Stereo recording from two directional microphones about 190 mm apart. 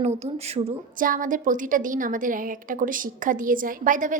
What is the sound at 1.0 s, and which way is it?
A woman's voice, 45° right (ahead or behind).